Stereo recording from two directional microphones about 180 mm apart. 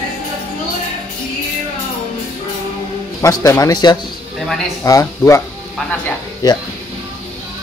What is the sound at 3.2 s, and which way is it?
A man's voice, 20° left (ahead or behind).